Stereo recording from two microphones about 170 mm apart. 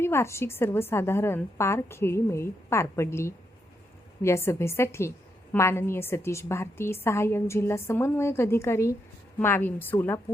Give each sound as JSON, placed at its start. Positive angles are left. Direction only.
{"t": 0.0, "sound": "a woman's voice", "side_deg": 15}